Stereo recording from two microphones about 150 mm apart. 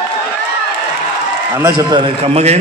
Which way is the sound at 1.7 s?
35° right (ahead or behind).